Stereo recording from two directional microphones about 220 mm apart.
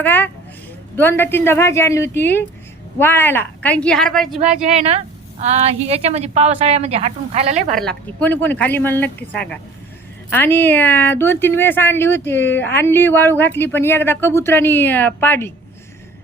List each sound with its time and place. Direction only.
0.0 s a woman's voice: 10° left (ahead or behind)
4.4 s a woman's voice: 30° right (ahead or behind)
7.8 s a woman's voice: 5° left (ahead or behind)